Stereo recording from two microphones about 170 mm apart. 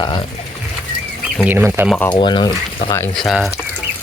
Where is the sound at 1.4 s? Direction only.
10° right (ahead or behind).